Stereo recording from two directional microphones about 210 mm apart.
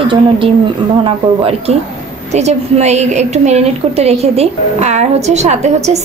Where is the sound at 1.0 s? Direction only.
25° right (ahead or behind).